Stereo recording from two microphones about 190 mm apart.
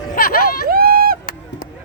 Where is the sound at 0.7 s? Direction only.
50° right (ahead or behind).